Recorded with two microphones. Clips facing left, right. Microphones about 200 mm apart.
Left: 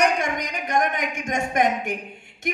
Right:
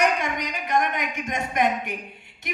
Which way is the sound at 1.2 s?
50° left (ahead or behind).